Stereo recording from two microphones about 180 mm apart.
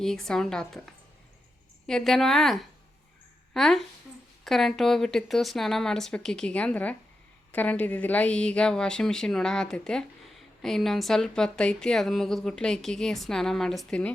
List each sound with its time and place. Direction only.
0.0 s speech: centre (ahead or behind)
1.9 s speech: 5° left (ahead or behind)